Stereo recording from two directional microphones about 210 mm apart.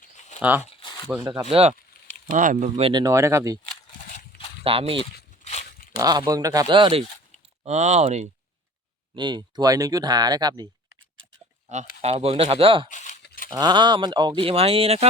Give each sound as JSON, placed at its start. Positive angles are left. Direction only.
{"t": 0.0, "sound": "a sound", "side_deg": 35}
{"t": 0.6, "sound": "a sound", "side_deg": 20}
{"t": 1.0, "sound": "speech", "side_deg": -10}
{"t": 1.3, "sound": "speech", "side_deg": -25}
{"t": 4.6, "sound": "speech", "side_deg": -25}
{"t": 5.5, "sound": "a sound", "side_deg": 40}
{"t": 6.0, "sound": "speech", "side_deg": -20}
{"t": 7.6, "sound": "speech", "side_deg": -35}
{"t": 9.1, "sound": "speech", "side_deg": -20}
{"t": 11.7, "sound": "speech", "side_deg": -35}
{"t": 12.9, "sound": "a sound", "side_deg": 35}
{"t": 13.5, "sound": "speech", "side_deg": -20}